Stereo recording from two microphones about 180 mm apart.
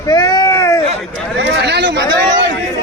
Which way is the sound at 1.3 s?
75° right (ahead or behind).